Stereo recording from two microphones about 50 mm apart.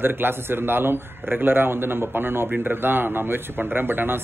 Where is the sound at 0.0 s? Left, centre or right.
Right.